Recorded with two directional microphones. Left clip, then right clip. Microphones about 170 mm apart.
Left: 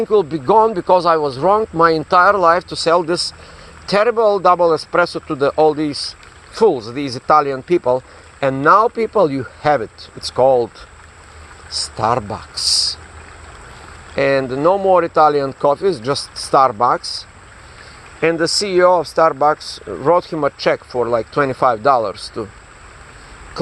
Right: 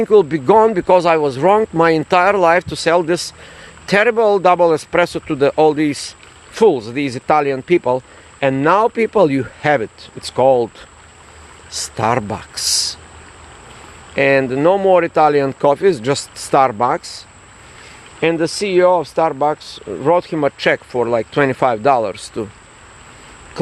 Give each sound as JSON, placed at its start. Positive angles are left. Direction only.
{"t": 0.0, "sound": "speech", "side_deg": -40}
{"t": 11.9, "sound": "speech", "side_deg": -40}
{"t": 14.2, "sound": "speech", "side_deg": -30}
{"t": 18.2, "sound": "speech", "side_deg": -40}
{"t": 19.1, "sound": "speech", "side_deg": -25}
{"t": 19.5, "sound": "speech", "side_deg": -50}
{"t": 20.0, "sound": "speech", "side_deg": -30}